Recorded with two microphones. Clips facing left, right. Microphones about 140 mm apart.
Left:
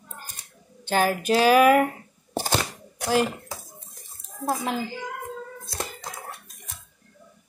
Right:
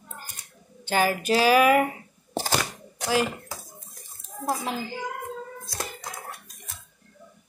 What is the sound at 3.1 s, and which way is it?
Speech, centre (ahead or behind).